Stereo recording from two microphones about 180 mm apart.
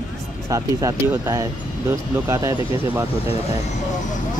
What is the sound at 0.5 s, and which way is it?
Speech, 20° right (ahead or behind).